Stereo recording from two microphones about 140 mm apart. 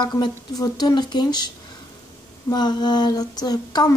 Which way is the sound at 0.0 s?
30° left (ahead or behind).